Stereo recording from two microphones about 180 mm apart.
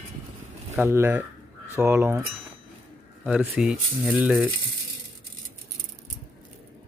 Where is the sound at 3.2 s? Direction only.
10° right (ahead or behind).